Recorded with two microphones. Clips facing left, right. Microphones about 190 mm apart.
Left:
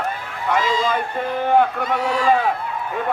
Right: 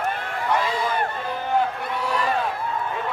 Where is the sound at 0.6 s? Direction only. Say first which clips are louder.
Left 3 dB; 60° right (ahead or behind).